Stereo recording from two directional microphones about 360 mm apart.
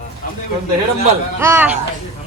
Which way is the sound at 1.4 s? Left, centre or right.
Centre.